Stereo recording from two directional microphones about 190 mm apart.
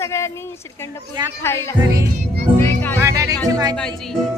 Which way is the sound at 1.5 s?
10° left (ahead or behind).